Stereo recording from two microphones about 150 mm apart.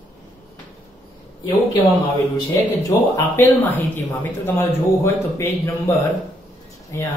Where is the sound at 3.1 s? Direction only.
15° left (ahead or behind).